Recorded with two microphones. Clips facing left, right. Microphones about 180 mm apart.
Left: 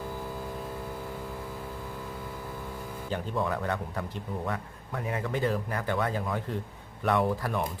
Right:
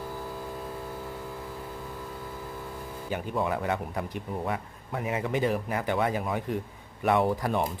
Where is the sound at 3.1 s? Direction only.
10° right (ahead or behind).